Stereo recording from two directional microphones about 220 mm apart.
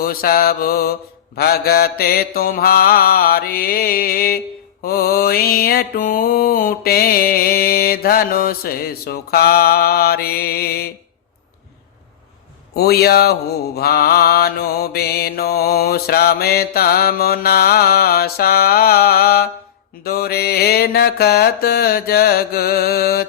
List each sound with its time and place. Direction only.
0.0 s mantra: 40° left (ahead or behind)
12.7 s mantra: 45° left (ahead or behind)